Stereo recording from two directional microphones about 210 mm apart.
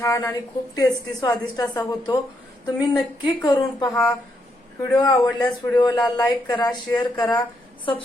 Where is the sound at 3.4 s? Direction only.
15° left (ahead or behind).